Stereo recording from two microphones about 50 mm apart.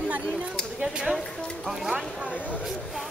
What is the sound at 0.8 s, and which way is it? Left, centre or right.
Speech, centre.